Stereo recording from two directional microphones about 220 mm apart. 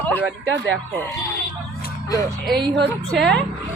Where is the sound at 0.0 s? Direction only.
5° left (ahead or behind).